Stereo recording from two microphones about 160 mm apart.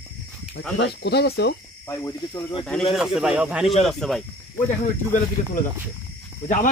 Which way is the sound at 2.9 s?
5° right (ahead or behind).